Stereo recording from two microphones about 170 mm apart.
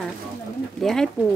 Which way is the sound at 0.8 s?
Centre (ahead or behind).